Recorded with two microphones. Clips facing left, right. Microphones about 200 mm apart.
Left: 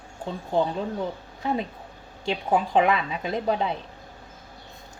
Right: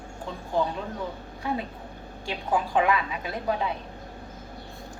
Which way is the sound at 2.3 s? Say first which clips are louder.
Left 3 dB; 25° left (ahead or behind).